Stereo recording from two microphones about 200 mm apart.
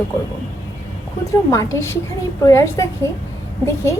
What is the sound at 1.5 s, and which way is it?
A woman's voice, 15° left (ahead or behind).